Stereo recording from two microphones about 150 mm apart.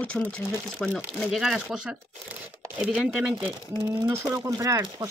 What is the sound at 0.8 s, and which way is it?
Speech, centre (ahead or behind).